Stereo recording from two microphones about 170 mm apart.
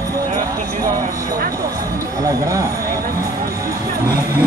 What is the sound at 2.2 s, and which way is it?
Speech, 20° right (ahead or behind).